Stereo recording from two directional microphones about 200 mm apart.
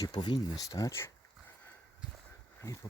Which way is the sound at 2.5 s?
15° left (ahead or behind).